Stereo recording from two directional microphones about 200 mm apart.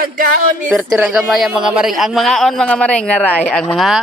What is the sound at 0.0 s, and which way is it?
Speech, 45° right (ahead or behind).